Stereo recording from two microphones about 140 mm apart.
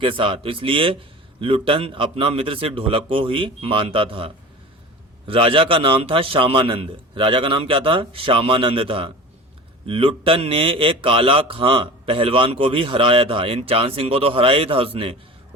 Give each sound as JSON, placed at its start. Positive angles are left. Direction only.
{"t": 0.0, "sound": "a man's voice", "side_deg": -40}